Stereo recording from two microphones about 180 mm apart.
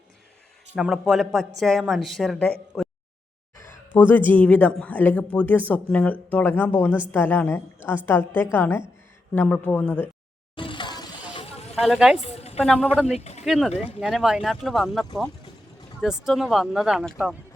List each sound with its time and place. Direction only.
0.8 s a woman's voice: centre (ahead or behind)
10.5 s a sound: 25° left (ahead or behind)
11.7 s a woman's voice: centre (ahead or behind)
12.2 s a sound: 35° left (ahead or behind)
12.6 s a woman's voice: centre (ahead or behind)
13.1 s speech: 40° left (ahead or behind)
13.4 s a woman's voice: centre (ahead or behind)